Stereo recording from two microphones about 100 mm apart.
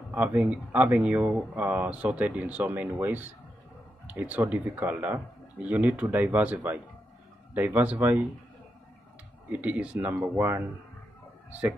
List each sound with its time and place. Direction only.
0.1 s speech: 15° right (ahead or behind)
9.5 s speech: 15° right (ahead or behind)